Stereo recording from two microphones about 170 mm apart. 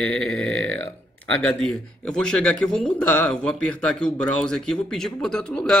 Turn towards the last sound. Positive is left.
turn(degrees=5)  # may be behind; listen again after turning